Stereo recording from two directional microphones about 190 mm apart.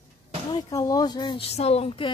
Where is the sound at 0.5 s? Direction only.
20° left (ahead or behind).